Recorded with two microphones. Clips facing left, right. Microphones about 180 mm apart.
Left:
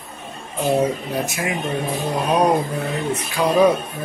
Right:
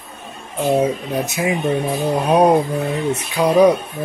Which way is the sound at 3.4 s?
20° right (ahead or behind).